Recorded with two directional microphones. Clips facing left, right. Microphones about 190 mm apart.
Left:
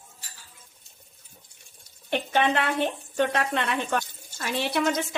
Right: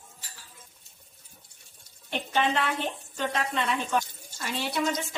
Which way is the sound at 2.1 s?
60° left (ahead or behind).